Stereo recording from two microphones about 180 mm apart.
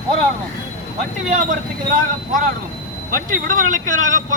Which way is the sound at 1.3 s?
45° right (ahead or behind).